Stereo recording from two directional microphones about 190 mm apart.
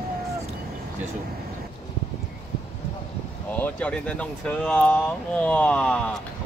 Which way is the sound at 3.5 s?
10° left (ahead or behind).